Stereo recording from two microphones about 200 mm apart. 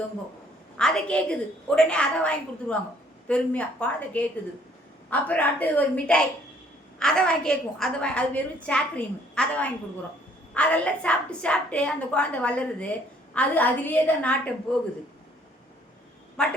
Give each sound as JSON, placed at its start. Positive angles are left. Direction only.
{"t": 0.8, "sound": "a woman's voice", "side_deg": 5}
{"t": 16.4, "sound": "a woman's voice", "side_deg": 5}